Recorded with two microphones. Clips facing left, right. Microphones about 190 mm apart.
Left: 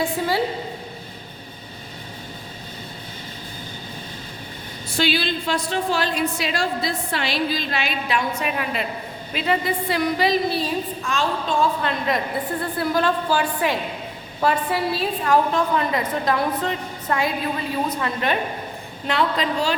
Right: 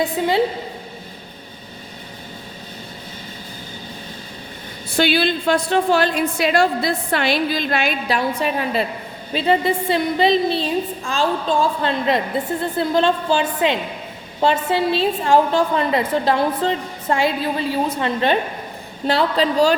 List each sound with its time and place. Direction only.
0.0 s a woman's voice: 20° right (ahead or behind)
4.9 s a woman's voice: 55° right (ahead or behind); by 19.7 s 35° right (ahead or behind)